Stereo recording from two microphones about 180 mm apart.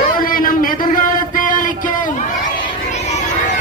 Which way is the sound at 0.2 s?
50° left (ahead or behind).